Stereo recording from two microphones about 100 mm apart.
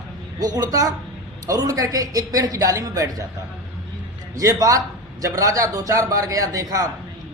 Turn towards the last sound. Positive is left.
turn(degrees=-35)  # may be behind; listen again after turning